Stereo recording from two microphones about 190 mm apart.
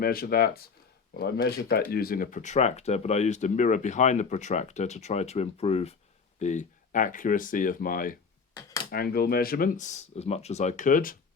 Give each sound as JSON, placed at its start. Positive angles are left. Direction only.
{"t": 0.0, "sound": "speech", "side_deg": 50}
{"t": 8.5, "sound": "a sound", "side_deg": 20}
{"t": 8.9, "sound": "speech", "side_deg": 55}